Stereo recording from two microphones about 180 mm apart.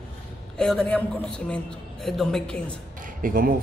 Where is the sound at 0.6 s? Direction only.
5° left (ahead or behind).